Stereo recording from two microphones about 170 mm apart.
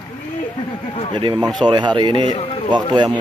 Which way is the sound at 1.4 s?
Centre (ahead or behind).